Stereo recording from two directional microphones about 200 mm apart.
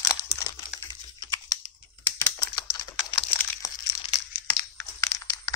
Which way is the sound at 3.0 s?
20° left (ahead or behind).